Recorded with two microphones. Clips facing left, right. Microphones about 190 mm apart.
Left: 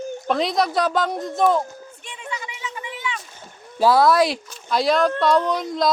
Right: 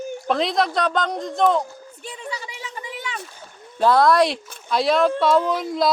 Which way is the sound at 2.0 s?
35° right (ahead or behind).